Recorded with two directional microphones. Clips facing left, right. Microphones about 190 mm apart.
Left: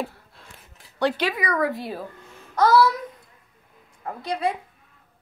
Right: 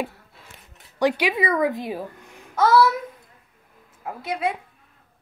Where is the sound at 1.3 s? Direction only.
25° right (ahead or behind).